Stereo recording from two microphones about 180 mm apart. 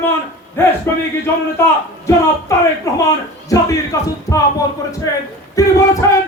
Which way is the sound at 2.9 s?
15° left (ahead or behind).